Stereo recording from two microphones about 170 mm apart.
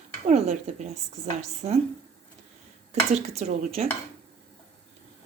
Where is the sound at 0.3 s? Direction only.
45° right (ahead or behind).